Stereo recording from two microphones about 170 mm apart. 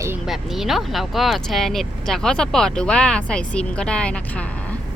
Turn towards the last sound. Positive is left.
turn(degrees=10)  # may be behind; listen again after turning